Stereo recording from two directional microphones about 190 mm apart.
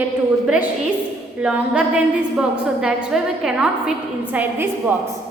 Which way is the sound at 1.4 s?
5° right (ahead or behind).